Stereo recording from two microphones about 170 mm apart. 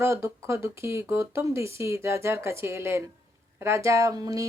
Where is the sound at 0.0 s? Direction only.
15° right (ahead or behind).